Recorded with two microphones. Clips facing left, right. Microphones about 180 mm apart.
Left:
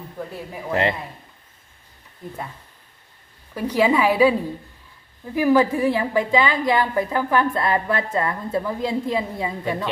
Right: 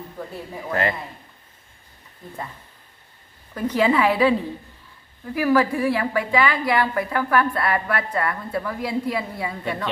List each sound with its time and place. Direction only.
0.5 s a woman's voice: 25° left (ahead or behind)
3.5 s a woman's voice: 10° left (ahead or behind)